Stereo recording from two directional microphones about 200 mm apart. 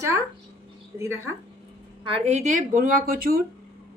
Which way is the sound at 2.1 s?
30° right (ahead or behind).